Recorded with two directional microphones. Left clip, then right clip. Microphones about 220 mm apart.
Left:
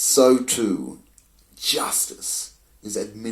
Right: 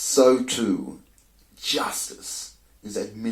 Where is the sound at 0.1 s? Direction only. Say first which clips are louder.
Left 1 dB; 30° left (ahead or behind).